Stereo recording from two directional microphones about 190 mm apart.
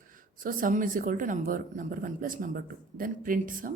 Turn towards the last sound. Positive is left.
turn(degrees=-45)  # may be behind; listen again after turning